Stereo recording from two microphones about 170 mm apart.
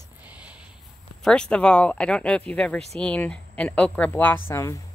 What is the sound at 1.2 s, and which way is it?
A woman's voice, 5° left (ahead or behind).